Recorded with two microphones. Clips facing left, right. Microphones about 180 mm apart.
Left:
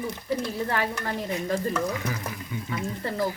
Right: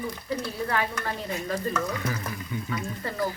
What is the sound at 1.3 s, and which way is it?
Speech, 20° left (ahead or behind).